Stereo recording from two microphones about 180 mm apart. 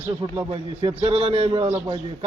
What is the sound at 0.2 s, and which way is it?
Speech, 20° right (ahead or behind).